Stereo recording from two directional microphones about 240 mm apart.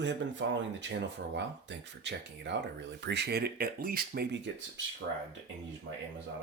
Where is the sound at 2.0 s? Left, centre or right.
Right.